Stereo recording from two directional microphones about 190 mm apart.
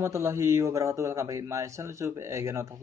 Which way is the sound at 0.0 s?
15° right (ahead or behind).